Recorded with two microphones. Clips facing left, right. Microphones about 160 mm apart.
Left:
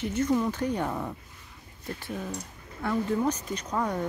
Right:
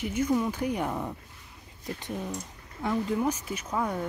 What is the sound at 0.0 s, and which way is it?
Speech, 10° right (ahead or behind).